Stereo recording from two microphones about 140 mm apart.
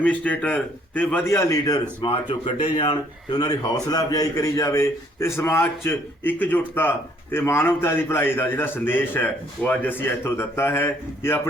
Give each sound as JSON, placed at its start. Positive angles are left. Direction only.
{"t": 0.0, "sound": "speech", "side_deg": 10}
{"t": 2.0, "sound": "speech", "side_deg": 40}